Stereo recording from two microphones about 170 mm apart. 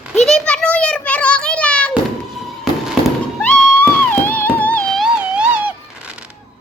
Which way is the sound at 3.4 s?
5° left (ahead or behind).